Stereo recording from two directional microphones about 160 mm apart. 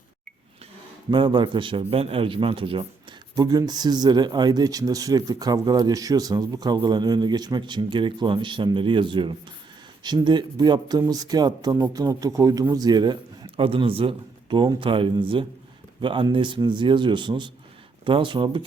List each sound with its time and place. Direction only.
1.1 s a man's voice: 30° right (ahead or behind)
3.3 s a man's voice: 25° right (ahead or behind)